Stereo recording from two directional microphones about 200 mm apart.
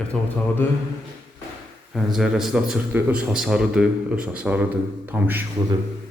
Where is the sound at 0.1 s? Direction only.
5° left (ahead or behind).